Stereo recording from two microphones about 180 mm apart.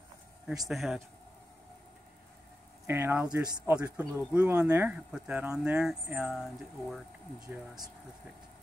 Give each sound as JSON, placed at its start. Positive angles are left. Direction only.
{"t": 0.7, "sound": "speech", "side_deg": 0}
{"t": 2.9, "sound": "speech", "side_deg": -10}
{"t": 3.3, "sound": "speech", "side_deg": -20}
{"t": 3.7, "sound": "speech", "side_deg": -10}